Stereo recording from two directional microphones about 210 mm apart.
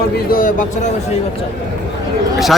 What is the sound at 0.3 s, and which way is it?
Speech, 40° left (ahead or behind).